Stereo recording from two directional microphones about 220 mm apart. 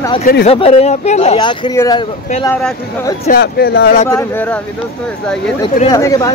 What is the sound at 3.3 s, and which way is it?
Speech, 45° left (ahead or behind).